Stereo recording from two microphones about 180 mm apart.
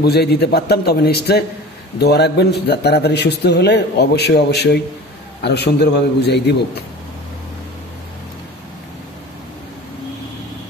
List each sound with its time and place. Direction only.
0.0 s a man's voice: 65° left (ahead or behind)